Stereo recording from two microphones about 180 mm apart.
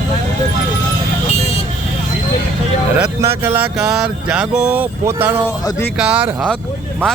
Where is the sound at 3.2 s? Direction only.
15° right (ahead or behind).